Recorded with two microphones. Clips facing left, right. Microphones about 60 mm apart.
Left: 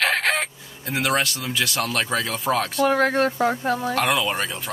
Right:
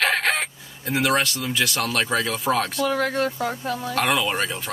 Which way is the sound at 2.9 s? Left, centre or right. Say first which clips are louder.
Left 3 dB; left.